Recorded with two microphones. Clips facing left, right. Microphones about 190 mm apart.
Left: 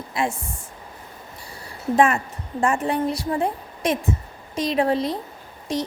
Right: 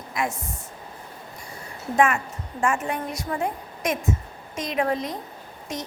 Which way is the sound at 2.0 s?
35° left (ahead or behind).